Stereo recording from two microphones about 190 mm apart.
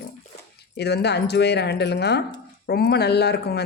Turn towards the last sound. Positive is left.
turn(degrees=60)  # may be behind; listen again after turning